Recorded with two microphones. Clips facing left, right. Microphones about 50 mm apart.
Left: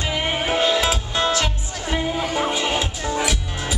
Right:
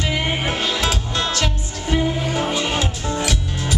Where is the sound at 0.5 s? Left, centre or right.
Centre.